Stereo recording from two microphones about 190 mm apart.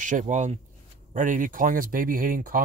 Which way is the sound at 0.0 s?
40° right (ahead or behind).